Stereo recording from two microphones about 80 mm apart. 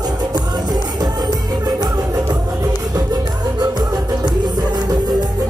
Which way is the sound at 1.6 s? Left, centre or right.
Right.